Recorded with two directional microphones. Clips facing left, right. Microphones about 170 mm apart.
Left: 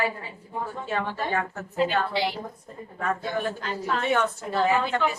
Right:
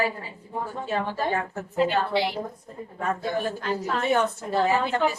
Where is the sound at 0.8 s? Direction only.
35° right (ahead or behind).